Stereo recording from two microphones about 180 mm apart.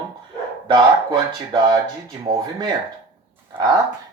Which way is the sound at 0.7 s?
25° right (ahead or behind).